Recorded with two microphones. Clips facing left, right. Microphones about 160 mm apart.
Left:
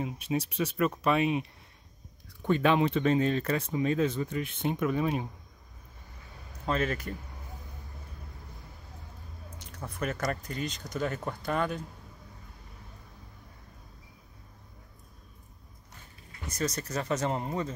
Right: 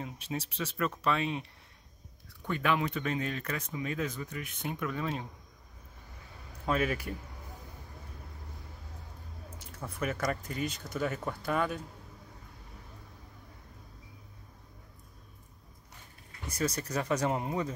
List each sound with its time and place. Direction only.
0.0 s speech: 15° left (ahead or behind)
2.4 s speech: 25° left (ahead or behind)
6.6 s speech: 10° right (ahead or behind)
9.9 s speech: 5° right (ahead or behind)
16.5 s speech: 10° right (ahead or behind)